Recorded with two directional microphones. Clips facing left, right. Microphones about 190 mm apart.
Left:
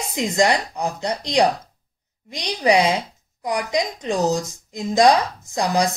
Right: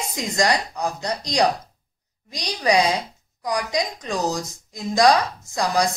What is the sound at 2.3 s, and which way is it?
Speech, 30° left (ahead or behind).